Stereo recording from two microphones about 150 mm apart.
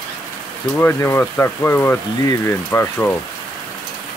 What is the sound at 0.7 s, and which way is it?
Speech, 15° left (ahead or behind).